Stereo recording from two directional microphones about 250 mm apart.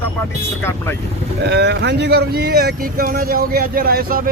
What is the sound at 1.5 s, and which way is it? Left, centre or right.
Speech, right.